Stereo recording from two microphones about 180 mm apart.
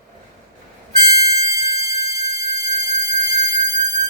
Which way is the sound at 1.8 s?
20° right (ahead or behind).